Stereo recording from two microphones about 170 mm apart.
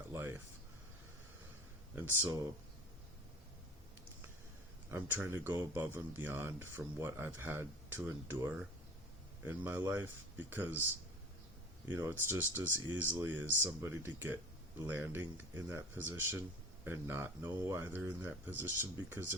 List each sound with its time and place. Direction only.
0.1 s a sound: 15° right (ahead or behind)
2.0 s speech: 10° right (ahead or behind)
4.9 s speech: 15° right (ahead or behind)
11.9 s speech: 15° right (ahead or behind)